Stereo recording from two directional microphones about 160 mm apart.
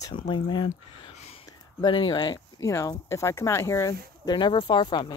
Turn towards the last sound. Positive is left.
turn(degrees=30)  # may be behind; listen again after turning